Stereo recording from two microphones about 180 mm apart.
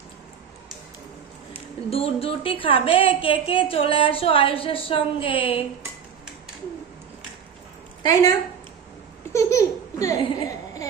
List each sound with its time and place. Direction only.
1.9 s speech: 35° left (ahead or behind)
8.0 s speech: 20° left (ahead or behind)
9.3 s laughter: 15° left (ahead or behind)